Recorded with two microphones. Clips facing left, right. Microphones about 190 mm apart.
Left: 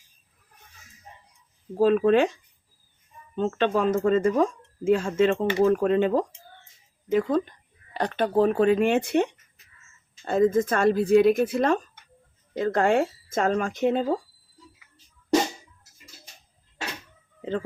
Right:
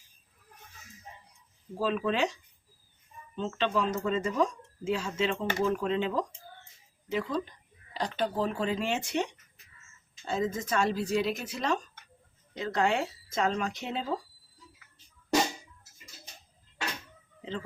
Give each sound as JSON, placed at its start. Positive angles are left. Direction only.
{"t": 1.8, "sound": "a woman's voice", "side_deg": 50}